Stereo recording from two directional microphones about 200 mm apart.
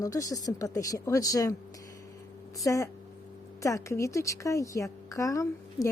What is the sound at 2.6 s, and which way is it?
Speech, 15° left (ahead or behind).